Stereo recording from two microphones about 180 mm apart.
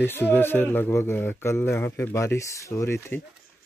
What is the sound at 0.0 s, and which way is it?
Speech, 10° left (ahead or behind).